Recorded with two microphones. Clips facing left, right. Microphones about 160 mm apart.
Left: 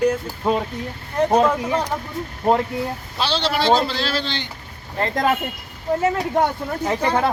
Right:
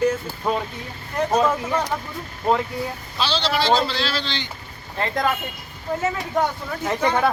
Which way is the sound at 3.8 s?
50° left (ahead or behind).